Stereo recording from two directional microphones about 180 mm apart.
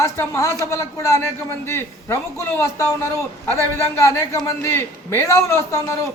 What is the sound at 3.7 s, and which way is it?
A man's voice, 15° left (ahead or behind).